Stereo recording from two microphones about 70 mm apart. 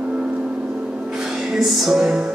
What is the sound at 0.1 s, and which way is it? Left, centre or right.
Music, centre.